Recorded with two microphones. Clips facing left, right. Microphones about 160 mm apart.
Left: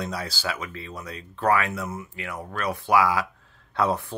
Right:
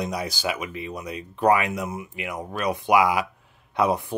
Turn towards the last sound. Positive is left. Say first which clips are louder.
# right 2 dB
turn(degrees=-15)  # may be behind; listen again after turning